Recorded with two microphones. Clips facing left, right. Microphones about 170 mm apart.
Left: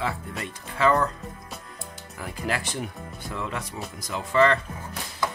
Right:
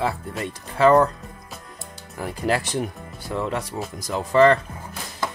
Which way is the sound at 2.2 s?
35° right (ahead or behind).